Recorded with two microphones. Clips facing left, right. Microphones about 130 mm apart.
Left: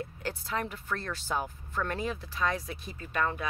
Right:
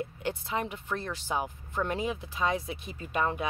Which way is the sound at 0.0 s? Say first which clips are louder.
Right 3 dB; 20° right (ahead or behind).